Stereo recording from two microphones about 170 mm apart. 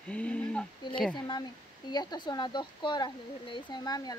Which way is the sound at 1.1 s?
25° left (ahead or behind).